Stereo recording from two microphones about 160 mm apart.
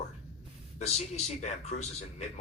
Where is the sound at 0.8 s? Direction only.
45° left (ahead or behind).